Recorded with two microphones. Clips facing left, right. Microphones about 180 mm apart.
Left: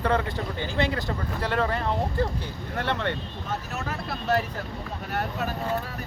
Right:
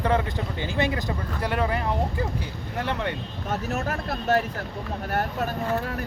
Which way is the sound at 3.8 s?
50° right (ahead or behind).